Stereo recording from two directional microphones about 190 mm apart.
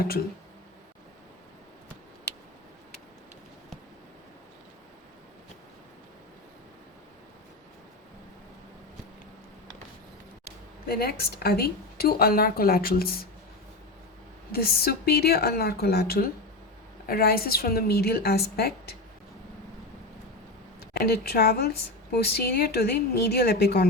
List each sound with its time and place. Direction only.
10.8 s a woman's voice: 55° left (ahead or behind)
14.5 s a woman's voice: 55° left (ahead or behind)
20.9 s a woman's voice: 55° left (ahead or behind)